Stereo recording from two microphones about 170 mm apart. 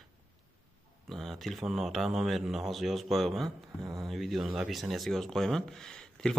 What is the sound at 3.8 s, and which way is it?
Speech, 20° right (ahead or behind).